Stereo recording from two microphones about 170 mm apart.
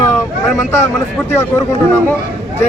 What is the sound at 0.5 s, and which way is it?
Speech, 15° left (ahead or behind).